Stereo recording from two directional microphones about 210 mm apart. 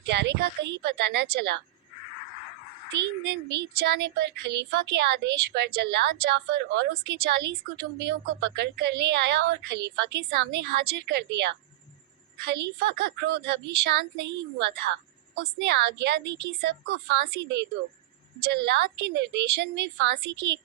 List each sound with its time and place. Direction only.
0.0 s a woman's voice: 55° right (ahead or behind)
3.8 s a woman's voice: 50° right (ahead or behind)
15.4 s a woman's voice: 50° right (ahead or behind)